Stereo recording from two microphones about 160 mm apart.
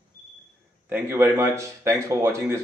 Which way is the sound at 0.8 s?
15° right (ahead or behind).